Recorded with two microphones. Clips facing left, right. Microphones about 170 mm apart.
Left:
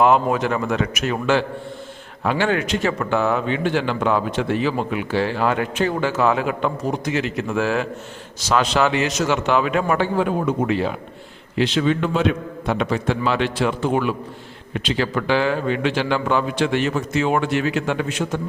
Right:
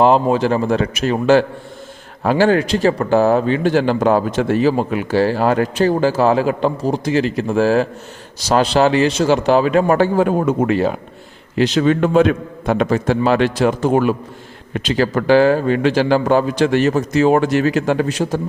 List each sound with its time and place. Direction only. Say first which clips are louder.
0.0 s a man's voice: right 4 dB; 30° right (ahead or behind)